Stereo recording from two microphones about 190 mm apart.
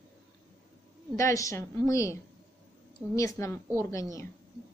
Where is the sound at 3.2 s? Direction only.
15° left (ahead or behind).